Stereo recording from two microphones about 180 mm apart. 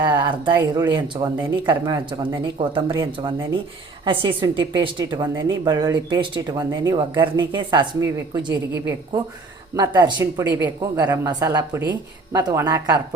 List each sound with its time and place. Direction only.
0.0 s a woman's voice: 25° right (ahead or behind)